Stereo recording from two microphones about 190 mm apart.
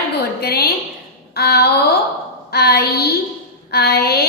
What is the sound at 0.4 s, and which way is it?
A woman's voice, 55° left (ahead or behind).